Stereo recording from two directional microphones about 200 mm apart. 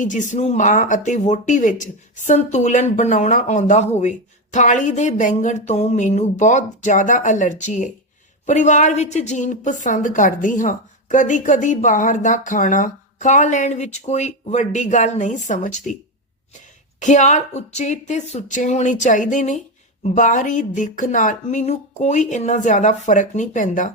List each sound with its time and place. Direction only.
0.0 s a woman's voice: 40° left (ahead or behind)
17.0 s a woman's voice: 35° left (ahead or behind)